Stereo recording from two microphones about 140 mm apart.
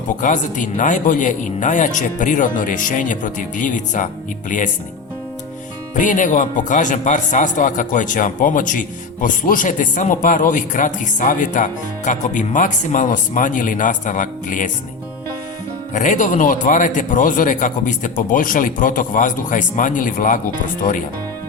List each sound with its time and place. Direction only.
0.2 s speech: 65° left (ahead or behind)
6.0 s speech: 65° left (ahead or behind)
15.9 s speech: 65° left (ahead or behind)